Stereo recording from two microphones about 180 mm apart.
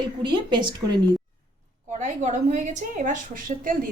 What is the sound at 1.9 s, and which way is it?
A woman's voice, 45° right (ahead or behind).